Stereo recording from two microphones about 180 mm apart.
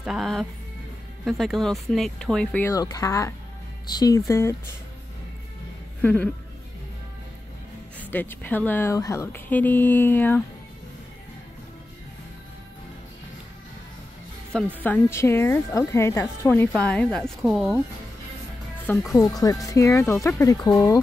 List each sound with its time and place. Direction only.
0.0 s a woman's voice: centre (ahead or behind); by 4.6 s 15° left (ahead or behind)
6.0 s a woman's voice: 10° left (ahead or behind)
8.0 s a woman's voice: 10° left (ahead or behind)
14.8 s a woman's voice: 10° left (ahead or behind)
19.1 s speech: 20° left (ahead or behind)